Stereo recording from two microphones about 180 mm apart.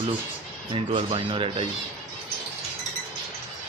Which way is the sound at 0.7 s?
30° right (ahead or behind).